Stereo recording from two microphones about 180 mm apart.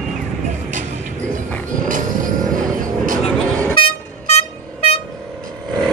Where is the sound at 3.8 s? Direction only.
35° left (ahead or behind).